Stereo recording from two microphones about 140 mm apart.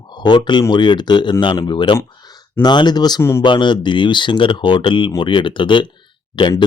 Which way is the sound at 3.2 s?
20° left (ahead or behind).